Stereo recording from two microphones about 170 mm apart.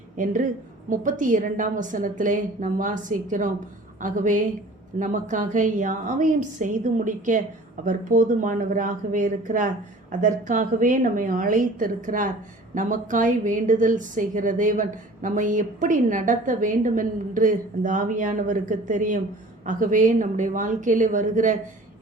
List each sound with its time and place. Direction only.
0.2 s a woman's voice: 50° right (ahead or behind)